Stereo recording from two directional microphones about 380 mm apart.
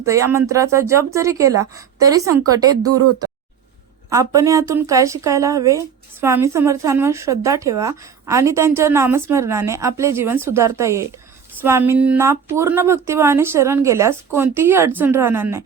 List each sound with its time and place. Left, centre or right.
0.1 s speech: centre
2.8 s speech: right
4.1 s speech: centre